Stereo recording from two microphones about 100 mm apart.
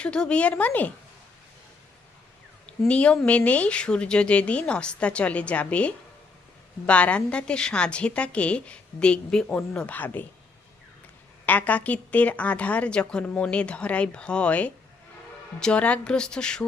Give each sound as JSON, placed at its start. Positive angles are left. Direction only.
{"t": 0.0, "sound": "speech", "side_deg": 10}
{"t": 2.6, "sound": "speech", "side_deg": 10}
{"t": 11.4, "sound": "speech", "side_deg": 15}